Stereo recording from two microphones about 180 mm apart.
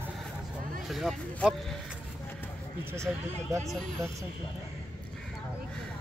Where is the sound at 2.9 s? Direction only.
15° right (ahead or behind).